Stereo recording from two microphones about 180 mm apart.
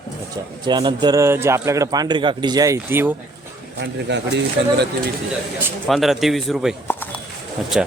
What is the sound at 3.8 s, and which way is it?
Speech, 75° right (ahead or behind).